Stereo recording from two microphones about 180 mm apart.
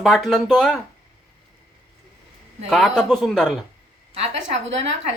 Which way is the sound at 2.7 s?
Centre (ahead or behind).